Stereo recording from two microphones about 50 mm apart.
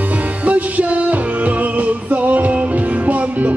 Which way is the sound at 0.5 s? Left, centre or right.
Right.